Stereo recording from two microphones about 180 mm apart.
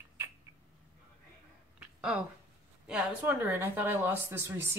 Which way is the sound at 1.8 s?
5° right (ahead or behind).